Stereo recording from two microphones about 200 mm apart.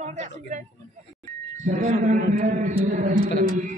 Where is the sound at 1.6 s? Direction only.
40° right (ahead or behind).